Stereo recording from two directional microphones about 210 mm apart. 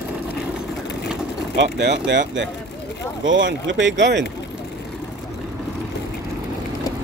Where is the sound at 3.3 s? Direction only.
60° right (ahead or behind).